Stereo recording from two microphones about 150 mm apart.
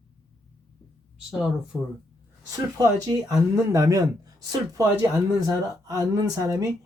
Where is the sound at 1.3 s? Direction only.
5° right (ahead or behind).